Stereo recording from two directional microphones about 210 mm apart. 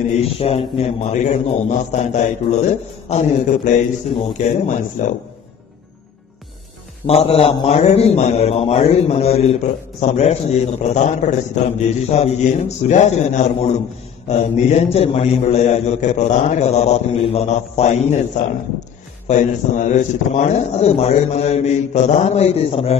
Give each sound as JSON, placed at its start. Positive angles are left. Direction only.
{"t": 0.2, "sound": "a man's voice", "side_deg": 30}
{"t": 7.1, "sound": "a man's voice", "side_deg": 30}
{"t": 19.2, "sound": "a man's voice", "side_deg": 35}